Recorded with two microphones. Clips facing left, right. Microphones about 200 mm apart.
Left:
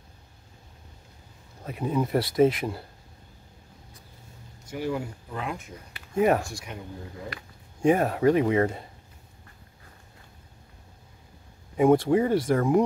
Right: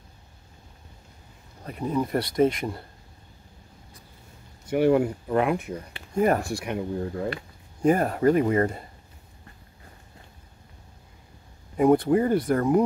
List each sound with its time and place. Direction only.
1.6 s speech: 5° left (ahead or behind)
4.6 s speech: 65° right (ahead or behind)
6.1 s speech: centre (ahead or behind)
6.4 s speech: 60° right (ahead or behind)
7.8 s speech: centre (ahead or behind)
11.7 s speech: centre (ahead or behind)